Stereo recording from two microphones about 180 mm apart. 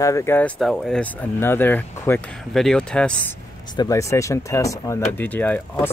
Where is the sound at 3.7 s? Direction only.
20° left (ahead or behind).